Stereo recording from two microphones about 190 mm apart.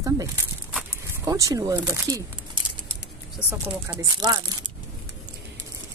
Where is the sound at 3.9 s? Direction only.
20° right (ahead or behind).